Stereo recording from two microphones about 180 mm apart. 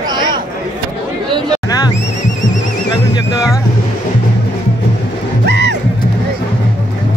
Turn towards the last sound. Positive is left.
turn(degrees=-75)  # may be behind; listen again after turning